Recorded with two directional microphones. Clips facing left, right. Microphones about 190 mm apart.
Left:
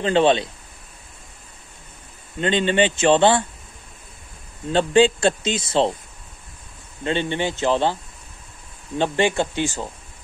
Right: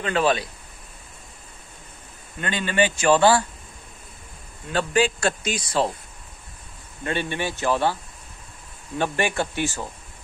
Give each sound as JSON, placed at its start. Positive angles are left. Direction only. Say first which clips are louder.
{"t": 0.0, "sound": "speech", "louder": "left 5 dB", "side_deg": 25}
{"t": 2.4, "sound": "speech", "louder": "left 4 dB", "side_deg": 25}
{"t": 4.6, "sound": "speech", "louder": "left 6 dB", "side_deg": 25}
{"t": 7.0, "sound": "speech", "louder": "left 4 dB", "side_deg": 20}